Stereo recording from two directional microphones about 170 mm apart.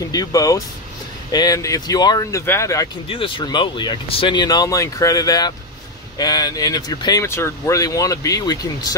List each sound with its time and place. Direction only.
0.1 s speech: 20° left (ahead or behind)
3.1 s speech: 30° left (ahead or behind)